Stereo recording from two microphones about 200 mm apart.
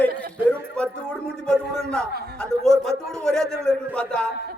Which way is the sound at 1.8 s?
5° left (ahead or behind).